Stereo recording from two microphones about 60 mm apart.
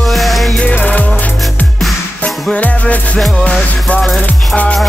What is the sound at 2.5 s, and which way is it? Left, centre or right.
Music, left.